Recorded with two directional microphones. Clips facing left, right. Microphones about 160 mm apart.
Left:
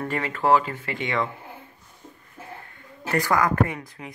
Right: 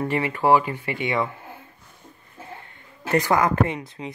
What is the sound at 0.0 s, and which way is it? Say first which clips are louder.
Speech: right 3 dB; 15° right (ahead or behind).